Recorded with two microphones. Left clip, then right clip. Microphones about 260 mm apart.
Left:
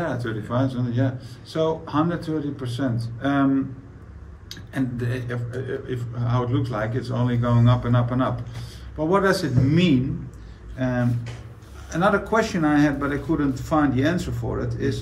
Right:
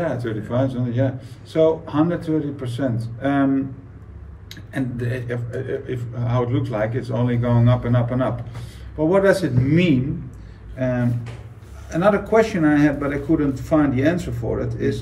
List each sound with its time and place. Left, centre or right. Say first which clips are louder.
0.0 s a man's voice: right 3 dB; centre
4.5 s a man's voice: right 1 dB; centre